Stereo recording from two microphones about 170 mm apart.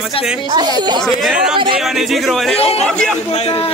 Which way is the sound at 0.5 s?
25° right (ahead or behind).